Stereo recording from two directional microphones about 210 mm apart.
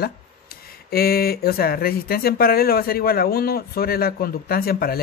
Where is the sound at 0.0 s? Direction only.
45° left (ahead or behind).